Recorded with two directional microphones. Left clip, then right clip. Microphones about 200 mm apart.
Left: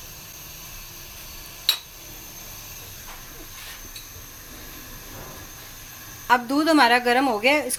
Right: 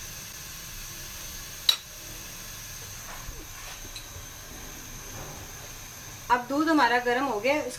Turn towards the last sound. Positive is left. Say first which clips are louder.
# left 6 dB
turn(degrees=50)  # may be behind; listen again after turning